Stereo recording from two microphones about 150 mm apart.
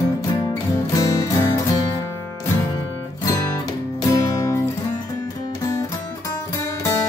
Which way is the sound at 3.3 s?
20° left (ahead or behind).